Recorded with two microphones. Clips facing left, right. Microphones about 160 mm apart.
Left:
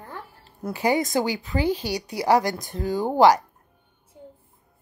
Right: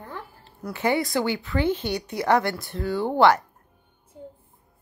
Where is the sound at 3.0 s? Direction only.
15° left (ahead or behind).